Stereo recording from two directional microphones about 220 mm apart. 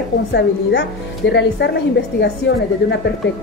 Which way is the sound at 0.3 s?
50° left (ahead or behind).